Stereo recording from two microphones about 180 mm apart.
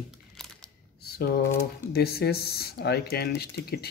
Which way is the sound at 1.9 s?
60° left (ahead or behind).